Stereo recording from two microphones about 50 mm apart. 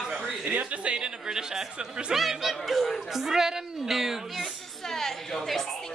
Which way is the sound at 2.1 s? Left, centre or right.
Centre.